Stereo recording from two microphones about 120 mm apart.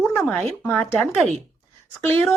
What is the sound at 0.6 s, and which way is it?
Speech, 15° left (ahead or behind).